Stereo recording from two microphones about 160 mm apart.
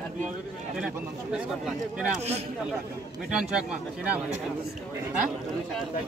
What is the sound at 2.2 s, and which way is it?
Speech, 40° right (ahead or behind).